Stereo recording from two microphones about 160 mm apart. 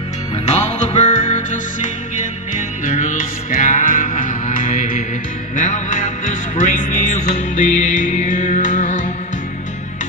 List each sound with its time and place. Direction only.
0.5 s music: 45° left (ahead or behind)
2.8 s music: 50° left (ahead or behind)